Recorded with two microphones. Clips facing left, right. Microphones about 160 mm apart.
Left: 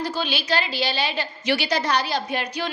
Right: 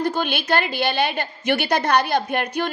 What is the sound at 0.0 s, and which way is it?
A woman's voice, 55° right (ahead or behind).